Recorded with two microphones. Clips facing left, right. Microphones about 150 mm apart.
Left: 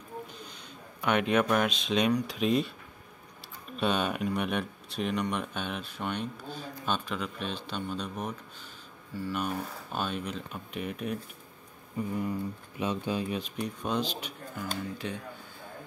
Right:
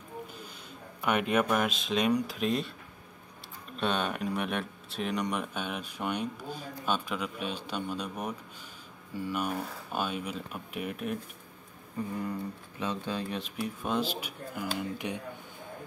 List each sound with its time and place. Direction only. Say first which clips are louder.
1.0 s speech: left 1 dB; 5° right (ahead or behind)
3.7 s speech: left 2 dB; centre (ahead or behind)
12.3 s speech: left 2 dB; 15° left (ahead or behind)
13.4 s speech: left 1 dB; 5° right (ahead or behind)